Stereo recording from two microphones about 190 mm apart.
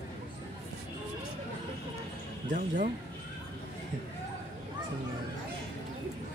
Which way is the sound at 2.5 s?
45° right (ahead or behind).